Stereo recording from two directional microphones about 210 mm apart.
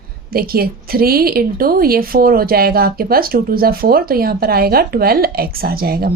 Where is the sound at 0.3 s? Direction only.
45° right (ahead or behind).